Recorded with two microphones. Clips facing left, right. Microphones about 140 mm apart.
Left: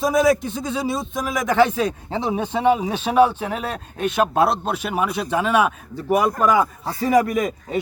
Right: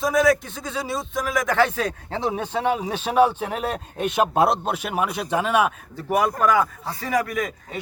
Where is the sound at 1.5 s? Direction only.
20° left (ahead or behind).